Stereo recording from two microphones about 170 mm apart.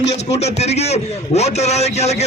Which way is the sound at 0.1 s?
40° left (ahead or behind).